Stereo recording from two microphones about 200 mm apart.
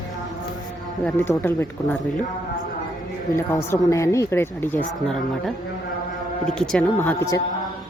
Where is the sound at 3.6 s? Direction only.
15° left (ahead or behind).